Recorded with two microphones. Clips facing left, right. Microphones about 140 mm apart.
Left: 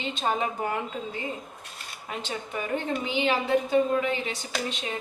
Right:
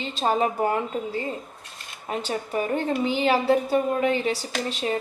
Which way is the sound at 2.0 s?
40° right (ahead or behind).